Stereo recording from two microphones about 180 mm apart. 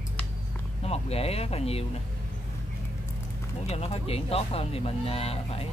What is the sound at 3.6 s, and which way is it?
Speech, 35° left (ahead or behind).